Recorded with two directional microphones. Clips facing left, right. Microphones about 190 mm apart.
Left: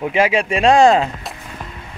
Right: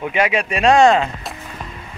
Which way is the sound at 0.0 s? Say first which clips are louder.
Left 2 dB; 30° left (ahead or behind).